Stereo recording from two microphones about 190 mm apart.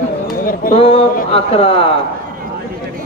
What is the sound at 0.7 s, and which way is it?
A man's voice, 30° left (ahead or behind).